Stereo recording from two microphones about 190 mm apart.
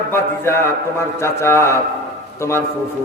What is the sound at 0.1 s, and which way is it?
A man's voice, 15° left (ahead or behind).